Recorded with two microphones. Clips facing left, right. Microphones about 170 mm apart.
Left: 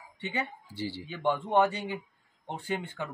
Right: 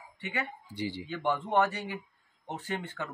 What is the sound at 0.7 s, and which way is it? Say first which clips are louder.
Speech: right 2 dB; 15° right (ahead or behind).